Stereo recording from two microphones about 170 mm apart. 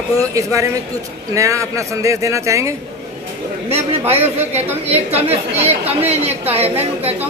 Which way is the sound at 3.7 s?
35° right (ahead or behind).